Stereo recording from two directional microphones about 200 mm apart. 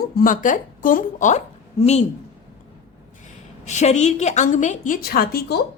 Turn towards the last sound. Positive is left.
turn(degrees=50)  # may be behind; listen again after turning